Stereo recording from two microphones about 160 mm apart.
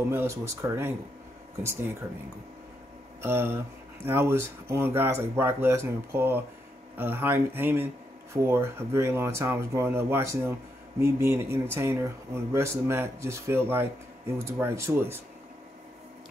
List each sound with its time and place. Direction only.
0.1 s speech: 15° right (ahead or behind)
3.2 s speech: 15° right (ahead or behind)